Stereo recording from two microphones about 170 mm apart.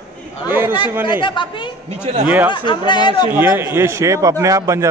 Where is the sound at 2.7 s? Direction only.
25° left (ahead or behind).